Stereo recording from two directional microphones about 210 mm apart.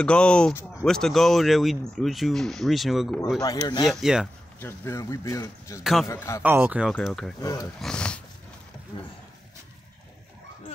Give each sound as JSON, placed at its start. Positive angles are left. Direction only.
{"t": 0.0, "sound": "speech", "side_deg": 5}
{"t": 3.3, "sound": "speech", "side_deg": 20}
{"t": 3.8, "sound": "speech", "side_deg": 0}
{"t": 4.6, "sound": "speech", "side_deg": 10}
{"t": 6.4, "sound": "speech", "side_deg": -10}